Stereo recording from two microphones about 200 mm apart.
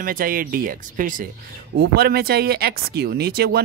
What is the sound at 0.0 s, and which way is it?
Speech, 45° right (ahead or behind).